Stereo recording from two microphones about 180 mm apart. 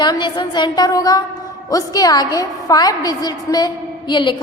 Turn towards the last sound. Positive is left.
turn(degrees=25)  # may be behind; listen again after turning